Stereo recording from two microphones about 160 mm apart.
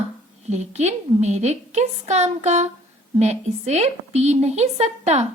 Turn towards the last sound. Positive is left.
turn(degrees=-45)  # may be behind; listen again after turning